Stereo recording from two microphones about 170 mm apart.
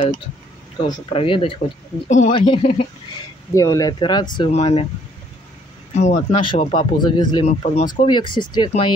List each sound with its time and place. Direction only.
0.9 s speech: 30° left (ahead or behind)
2.0 s speech: 45° left (ahead or behind)
2.3 s speech: 30° left (ahead or behind)
3.5 s speech: 20° left (ahead or behind)
4.5 s speech: 40° left (ahead or behind)
5.9 s speech: 45° left (ahead or behind)
6.4 s speech: 30° left (ahead or behind)
7.4 s speech: 35° left (ahead or behind)